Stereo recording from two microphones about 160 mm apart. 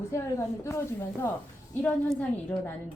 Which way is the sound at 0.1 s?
15° left (ahead or behind).